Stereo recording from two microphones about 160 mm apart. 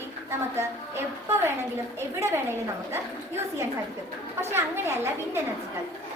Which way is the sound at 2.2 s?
15° right (ahead or behind).